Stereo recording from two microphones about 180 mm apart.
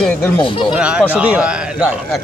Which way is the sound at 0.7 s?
5° right (ahead or behind).